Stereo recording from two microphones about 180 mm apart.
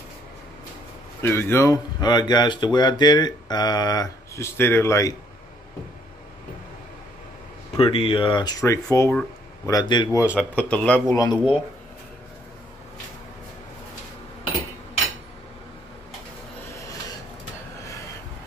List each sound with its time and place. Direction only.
1.2 s speech: 10° left (ahead or behind)
7.7 s speech: 30° left (ahead or behind)
10.5 s speech: 5° left (ahead or behind)
11.1 s speech: 25° left (ahead or behind)